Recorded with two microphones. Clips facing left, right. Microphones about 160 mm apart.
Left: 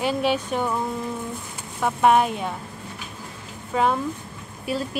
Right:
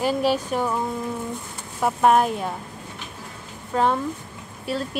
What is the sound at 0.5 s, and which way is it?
Speech, 5° right (ahead or behind).